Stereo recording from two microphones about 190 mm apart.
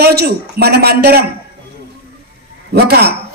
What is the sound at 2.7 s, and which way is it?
Speech, 60° right (ahead or behind).